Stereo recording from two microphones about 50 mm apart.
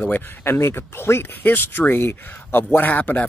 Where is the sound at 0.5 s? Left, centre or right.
Left.